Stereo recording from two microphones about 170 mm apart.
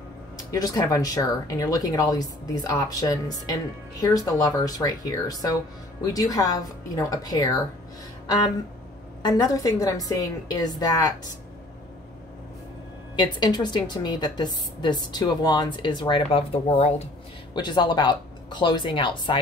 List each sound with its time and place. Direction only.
0.4 s a woman's voice: 20° left (ahead or behind)
9.2 s a woman's voice: 20° left (ahead or behind)
13.1 s a woman's voice: 25° left (ahead or behind)
17.6 s a woman's voice: 25° left (ahead or behind)